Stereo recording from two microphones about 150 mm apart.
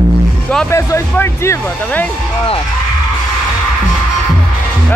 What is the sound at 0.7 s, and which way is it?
Speech, 20° left (ahead or behind).